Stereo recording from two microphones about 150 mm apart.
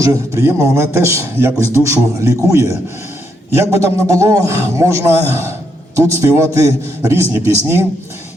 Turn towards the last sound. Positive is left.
turn(degrees=-20)  # may be behind; listen again after turning